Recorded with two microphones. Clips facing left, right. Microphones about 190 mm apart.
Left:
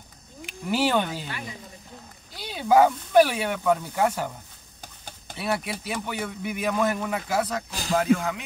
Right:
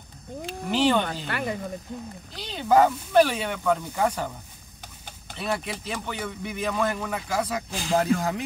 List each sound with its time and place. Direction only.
0.5 s speech: 10° left (ahead or behind)
1.2 s speech: 60° right (ahead or behind)
2.3 s speech: 10° left (ahead or behind)
5.3 s speech: 10° left (ahead or behind)
7.9 s speech: 35° right (ahead or behind)